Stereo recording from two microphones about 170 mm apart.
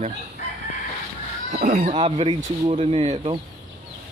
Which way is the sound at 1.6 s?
55° right (ahead or behind).